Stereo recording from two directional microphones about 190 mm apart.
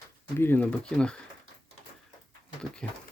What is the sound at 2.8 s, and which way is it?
Speech, 5° left (ahead or behind).